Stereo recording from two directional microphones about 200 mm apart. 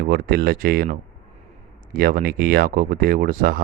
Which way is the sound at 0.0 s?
50° right (ahead or behind).